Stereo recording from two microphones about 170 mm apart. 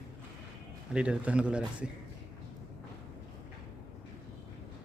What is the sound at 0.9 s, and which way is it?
Speech, 5° right (ahead or behind).